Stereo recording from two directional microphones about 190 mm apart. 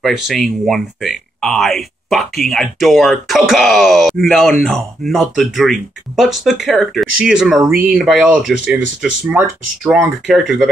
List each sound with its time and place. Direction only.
0.0 s speech: centre (ahead or behind)